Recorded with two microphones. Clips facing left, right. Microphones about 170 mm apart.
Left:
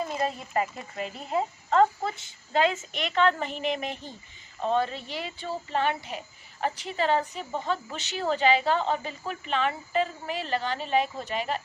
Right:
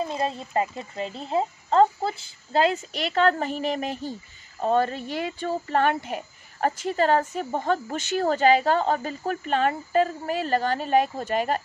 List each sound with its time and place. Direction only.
0.0 s speech: 25° right (ahead or behind); by 11.6 s 45° right (ahead or behind)